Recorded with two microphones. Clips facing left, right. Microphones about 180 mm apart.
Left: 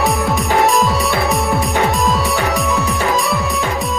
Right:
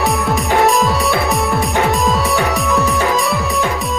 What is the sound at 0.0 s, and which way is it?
Music, centre (ahead or behind).